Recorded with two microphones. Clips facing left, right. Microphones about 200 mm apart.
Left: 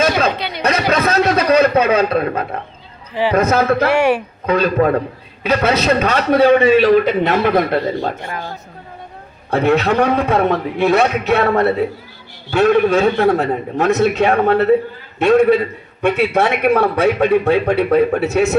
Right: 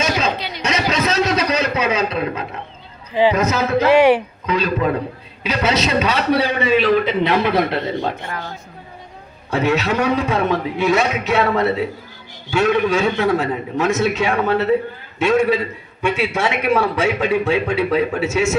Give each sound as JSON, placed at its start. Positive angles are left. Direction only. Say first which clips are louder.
{"t": 0.0, "sound": "a sound", "louder": "left 4 dB", "side_deg": 55}
{"t": 3.3, "sound": "a man's voice", "louder": "left 5 dB", "side_deg": 55}
{"t": 3.8, "sound": "speech", "louder": "right 2 dB", "side_deg": -15}
{"t": 4.4, "sound": "a man's voice", "louder": "left 5 dB", "side_deg": 55}
{"t": 9.5, "sound": "a man's voice", "louder": "left 4 dB", "side_deg": 55}